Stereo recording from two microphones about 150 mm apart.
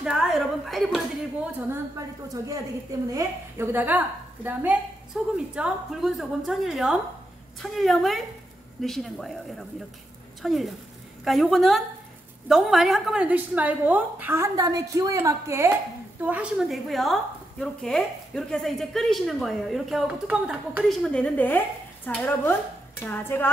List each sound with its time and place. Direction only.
0.0 s a woman's voice: 5° right (ahead or behind)
1.7 s a woman's voice: 20° right (ahead or behind); by 23.5 s 15° left (ahead or behind)